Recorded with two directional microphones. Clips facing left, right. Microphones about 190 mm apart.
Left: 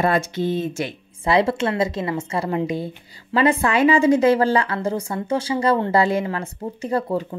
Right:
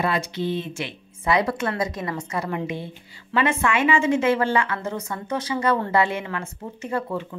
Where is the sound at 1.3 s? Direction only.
25° left (ahead or behind).